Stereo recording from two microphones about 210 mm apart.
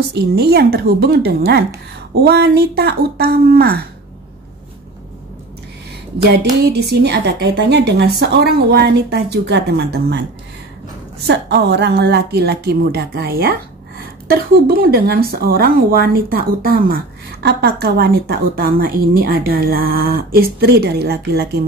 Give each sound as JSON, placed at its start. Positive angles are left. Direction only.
{"t": 0.1, "sound": "speech", "side_deg": -50}
{"t": 6.3, "sound": "speech", "side_deg": -50}
{"t": 11.2, "sound": "speech", "side_deg": -55}